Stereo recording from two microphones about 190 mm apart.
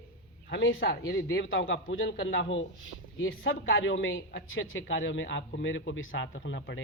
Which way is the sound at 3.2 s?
90° left.